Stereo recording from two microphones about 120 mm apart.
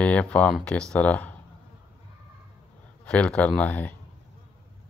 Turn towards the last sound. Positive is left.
turn(degrees=10)  # may be behind; listen again after turning